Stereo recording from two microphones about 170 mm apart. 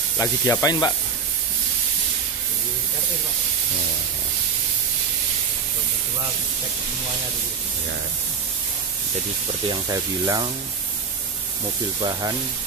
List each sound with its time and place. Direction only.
0.2 s speech: 20° left (ahead or behind)
9.7 s speech: 25° right (ahead or behind)
12.0 s speech: 25° right (ahead or behind)